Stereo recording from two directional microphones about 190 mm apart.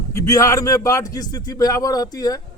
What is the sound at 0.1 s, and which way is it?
A man's voice, 15° left (ahead or behind).